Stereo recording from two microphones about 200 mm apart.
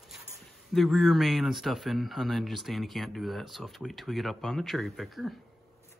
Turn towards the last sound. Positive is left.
turn(degrees=0)  # may be behind; listen again after turning